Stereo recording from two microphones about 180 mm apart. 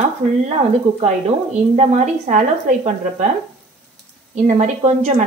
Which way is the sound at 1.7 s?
40° right (ahead or behind).